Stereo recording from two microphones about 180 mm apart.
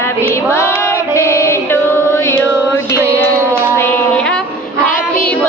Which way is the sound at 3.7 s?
10° left (ahead or behind).